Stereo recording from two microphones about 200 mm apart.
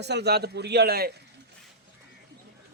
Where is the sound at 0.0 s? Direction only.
55° right (ahead or behind).